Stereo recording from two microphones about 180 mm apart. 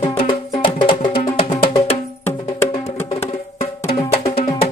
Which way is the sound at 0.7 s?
30° left (ahead or behind).